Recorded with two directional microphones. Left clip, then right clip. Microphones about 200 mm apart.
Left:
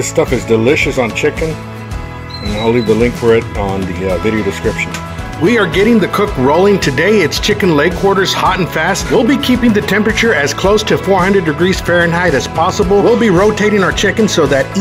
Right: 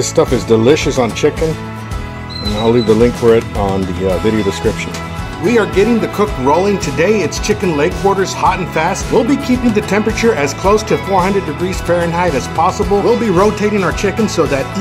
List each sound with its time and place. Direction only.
0.2 s speech: 15° right (ahead or behind)
2.6 s speech: 10° right (ahead or behind)
5.5 s speech: 20° left (ahead or behind)